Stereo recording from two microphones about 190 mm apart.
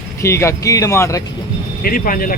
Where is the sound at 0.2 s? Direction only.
15° left (ahead or behind).